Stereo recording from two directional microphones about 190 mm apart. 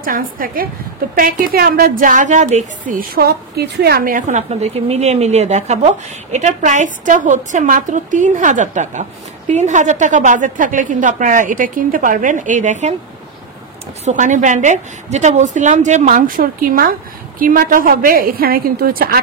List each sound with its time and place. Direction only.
0.0 s a woman's voice: 45° right (ahead or behind)
14.0 s a woman's voice: 40° right (ahead or behind)